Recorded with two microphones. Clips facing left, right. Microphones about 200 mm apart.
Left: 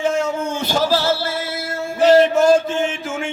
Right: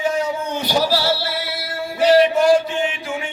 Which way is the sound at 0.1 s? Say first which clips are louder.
Left 1 dB; 45° left (ahead or behind).